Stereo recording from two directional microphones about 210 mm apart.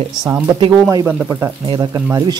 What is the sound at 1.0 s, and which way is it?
Speech, 5° right (ahead or behind).